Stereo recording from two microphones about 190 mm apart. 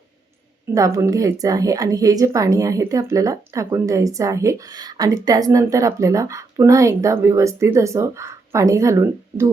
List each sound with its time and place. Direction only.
0.7 s a woman's voice: 15° right (ahead or behind)